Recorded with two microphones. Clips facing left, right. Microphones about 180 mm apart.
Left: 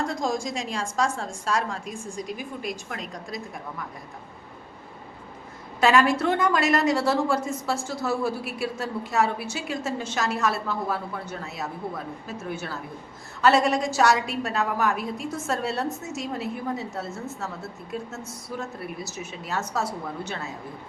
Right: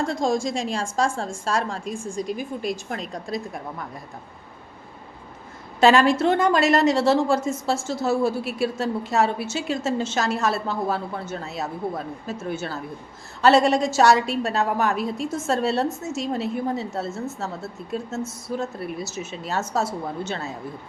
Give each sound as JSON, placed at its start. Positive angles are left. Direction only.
{"t": 0.1, "sound": "a woman's voice", "side_deg": -25}
{"t": 5.8, "sound": "a woman's voice", "side_deg": -25}